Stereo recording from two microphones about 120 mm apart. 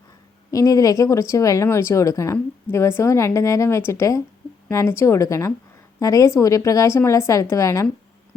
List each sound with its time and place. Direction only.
0.5 s speech: 30° left (ahead or behind)